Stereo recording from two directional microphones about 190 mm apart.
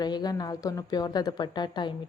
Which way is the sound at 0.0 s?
20° left (ahead or behind).